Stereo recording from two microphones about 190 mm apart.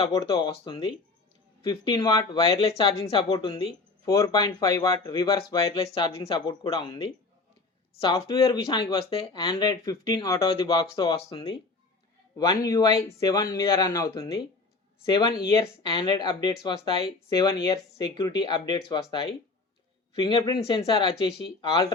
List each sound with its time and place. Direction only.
0.0 s speech: 20° left (ahead or behind)
2.6 s a woman's voice: 30° left (ahead or behind)
5.7 s speech: 30° left (ahead or behind)
8.0 s speech: 30° left (ahead or behind)
10.4 s speech: 30° left (ahead or behind)
12.6 s speech: 15° left (ahead or behind)
20.2 s speech: 25° left (ahead or behind)